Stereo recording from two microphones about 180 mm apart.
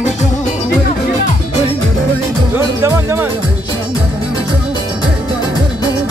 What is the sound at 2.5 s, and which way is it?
Music, 15° right (ahead or behind).